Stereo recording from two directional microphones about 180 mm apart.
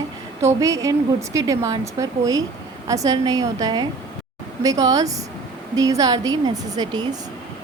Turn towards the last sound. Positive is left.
turn(degrees=-25)  # may be behind; listen again after turning